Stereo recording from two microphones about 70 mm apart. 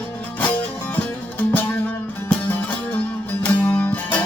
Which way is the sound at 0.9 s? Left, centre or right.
Left.